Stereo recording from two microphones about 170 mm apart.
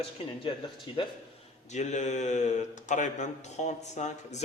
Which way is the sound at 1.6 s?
45° left (ahead or behind).